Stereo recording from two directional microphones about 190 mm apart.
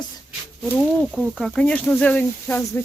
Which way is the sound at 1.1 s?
Centre (ahead or behind).